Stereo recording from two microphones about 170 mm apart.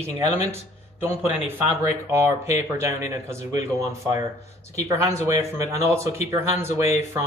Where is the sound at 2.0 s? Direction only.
15° right (ahead or behind).